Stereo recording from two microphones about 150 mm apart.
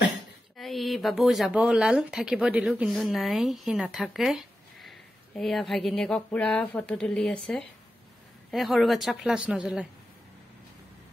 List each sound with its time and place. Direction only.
0.6 s a woman's voice: centre (ahead or behind)